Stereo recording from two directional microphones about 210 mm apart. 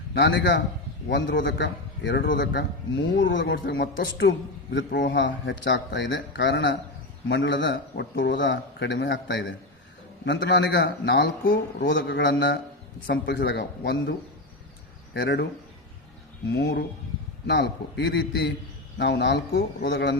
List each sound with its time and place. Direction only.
0.1 s a man's voice: 55° left (ahead or behind)
11.9 s a man's voice: 60° left (ahead or behind)
16.5 s a man's voice: 55° left (ahead or behind)